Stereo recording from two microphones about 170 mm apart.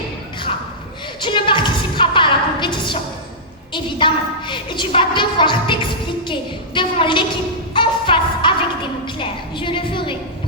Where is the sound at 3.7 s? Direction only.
30° left (ahead or behind).